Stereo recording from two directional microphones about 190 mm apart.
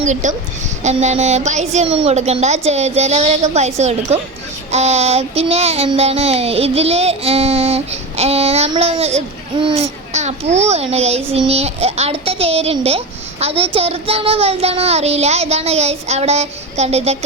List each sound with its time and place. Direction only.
0.0 s child singing: 40° right (ahead or behind)